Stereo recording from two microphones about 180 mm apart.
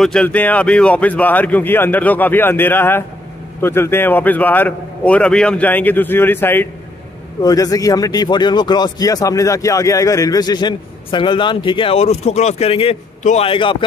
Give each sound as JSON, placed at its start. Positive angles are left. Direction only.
{"t": 0.0, "sound": "a man's voice", "side_deg": 5}